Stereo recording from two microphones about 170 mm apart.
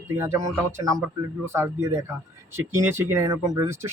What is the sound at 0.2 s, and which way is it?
Speech, 15° right (ahead or behind).